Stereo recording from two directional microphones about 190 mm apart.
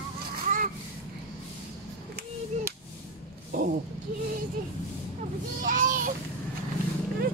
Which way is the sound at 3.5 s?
40° right (ahead or behind).